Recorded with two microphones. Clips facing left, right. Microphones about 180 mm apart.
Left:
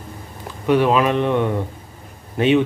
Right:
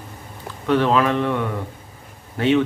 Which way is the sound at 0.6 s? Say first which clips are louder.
Left 2 dB; 15° left (ahead or behind).